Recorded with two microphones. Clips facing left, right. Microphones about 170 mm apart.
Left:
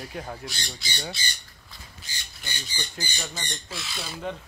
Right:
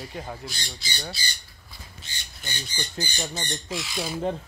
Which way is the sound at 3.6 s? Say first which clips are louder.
Right 6 dB; 15° right (ahead or behind).